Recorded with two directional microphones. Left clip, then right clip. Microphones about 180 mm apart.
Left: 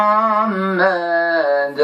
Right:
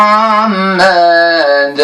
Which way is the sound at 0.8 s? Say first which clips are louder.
Right 10 dB; 45° right (ahead or behind).